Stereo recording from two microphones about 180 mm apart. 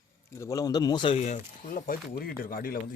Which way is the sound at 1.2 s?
45° left (ahead or behind).